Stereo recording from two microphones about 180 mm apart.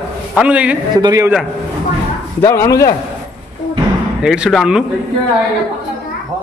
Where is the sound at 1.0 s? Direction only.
20° right (ahead or behind).